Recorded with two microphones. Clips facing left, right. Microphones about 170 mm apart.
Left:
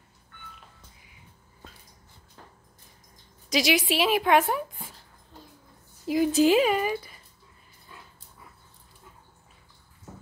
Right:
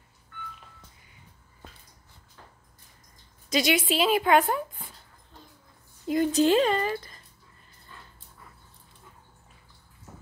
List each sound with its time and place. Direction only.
3.4 s speech: centre (ahead or behind)
6.0 s speech: 5° left (ahead or behind)